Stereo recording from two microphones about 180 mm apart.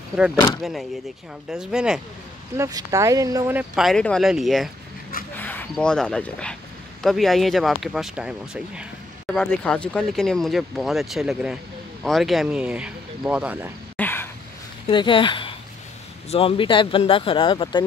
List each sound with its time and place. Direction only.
0.6 s speech: centre (ahead or behind)
2.5 s speech: 15° right (ahead or behind)
13.9 s a sound: 10° left (ahead or behind)
14.9 s speech: 25° left (ahead or behind)